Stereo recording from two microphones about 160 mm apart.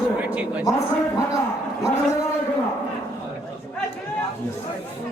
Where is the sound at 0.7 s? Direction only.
20° left (ahead or behind).